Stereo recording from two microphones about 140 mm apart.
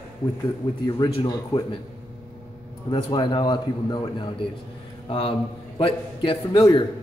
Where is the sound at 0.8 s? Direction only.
30° left (ahead or behind).